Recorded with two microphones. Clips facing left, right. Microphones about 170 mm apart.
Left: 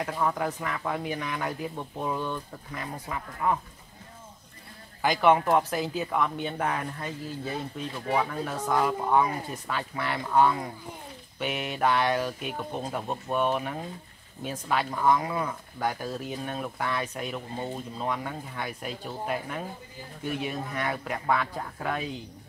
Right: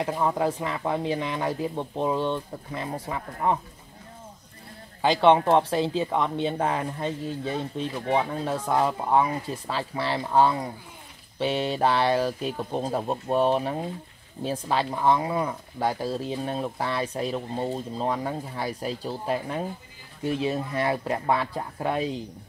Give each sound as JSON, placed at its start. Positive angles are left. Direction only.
{"t": 0.0, "sound": "speech", "side_deg": -25}
{"t": 5.0, "sound": "speech", "side_deg": -30}